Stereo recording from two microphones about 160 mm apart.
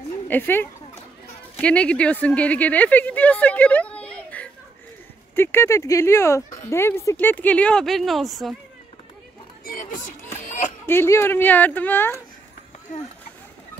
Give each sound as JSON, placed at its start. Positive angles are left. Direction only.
{"t": 0.3, "sound": "speech", "side_deg": 15}
{"t": 9.7, "sound": "a sound", "side_deg": 55}
{"t": 10.9, "sound": "speech", "side_deg": 15}
{"t": 12.9, "sound": "speech", "side_deg": 55}